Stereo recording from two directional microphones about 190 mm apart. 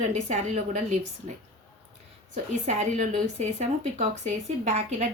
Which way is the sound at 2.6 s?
40° right (ahead or behind).